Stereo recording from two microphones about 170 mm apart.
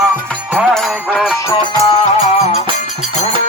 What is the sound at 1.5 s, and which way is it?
Music, 25° left (ahead or behind).